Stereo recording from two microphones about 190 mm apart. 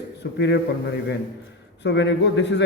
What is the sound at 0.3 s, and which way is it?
Speech, 60° left (ahead or behind).